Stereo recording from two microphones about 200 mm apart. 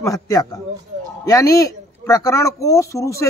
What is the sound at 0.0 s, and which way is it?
Speech, 15° left (ahead or behind).